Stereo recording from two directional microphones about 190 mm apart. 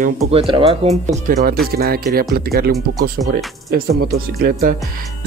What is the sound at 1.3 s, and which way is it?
Speech, 50° right (ahead or behind).